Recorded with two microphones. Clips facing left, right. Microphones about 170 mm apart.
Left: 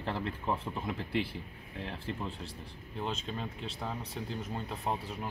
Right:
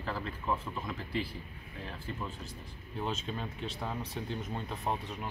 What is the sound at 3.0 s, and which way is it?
Speech, 5° right (ahead or behind).